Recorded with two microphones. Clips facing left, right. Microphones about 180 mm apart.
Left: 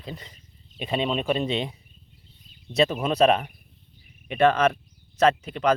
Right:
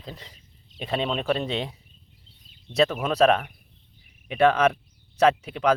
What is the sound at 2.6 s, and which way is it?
Speech, 10° left (ahead or behind).